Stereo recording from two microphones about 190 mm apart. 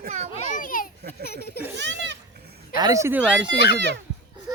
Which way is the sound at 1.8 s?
70° right (ahead or behind).